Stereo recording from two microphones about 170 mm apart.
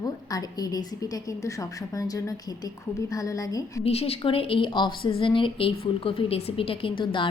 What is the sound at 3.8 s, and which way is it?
A woman's voice, 35° left (ahead or behind).